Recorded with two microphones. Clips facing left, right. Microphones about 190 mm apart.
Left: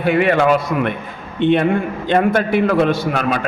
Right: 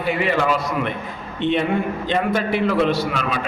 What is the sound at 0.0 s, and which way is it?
A man's voice, 60° left (ahead or behind).